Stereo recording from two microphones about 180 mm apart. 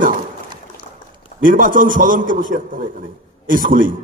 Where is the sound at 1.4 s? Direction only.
50° right (ahead or behind).